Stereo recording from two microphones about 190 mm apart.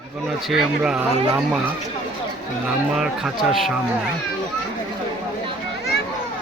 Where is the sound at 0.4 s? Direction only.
5° right (ahead or behind).